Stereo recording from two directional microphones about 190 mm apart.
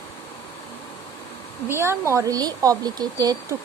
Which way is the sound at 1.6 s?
15° right (ahead or behind).